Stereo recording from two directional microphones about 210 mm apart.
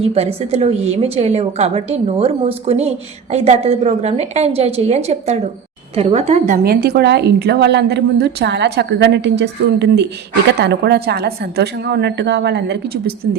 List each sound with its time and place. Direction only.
0.0 s a woman's voice: 30° right (ahead or behind); by 13.1 s 50° right (ahead or behind)